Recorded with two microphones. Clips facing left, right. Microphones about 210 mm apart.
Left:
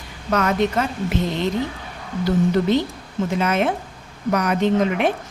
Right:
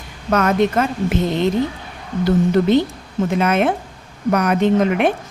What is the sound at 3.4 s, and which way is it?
A woman's voice, 60° right (ahead or behind).